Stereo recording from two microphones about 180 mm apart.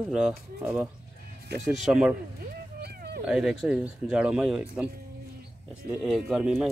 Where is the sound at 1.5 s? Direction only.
65° right (ahead or behind).